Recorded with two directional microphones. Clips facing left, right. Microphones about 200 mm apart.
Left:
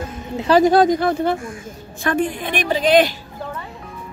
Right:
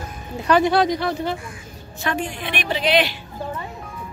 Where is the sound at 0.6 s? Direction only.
45° left (ahead or behind).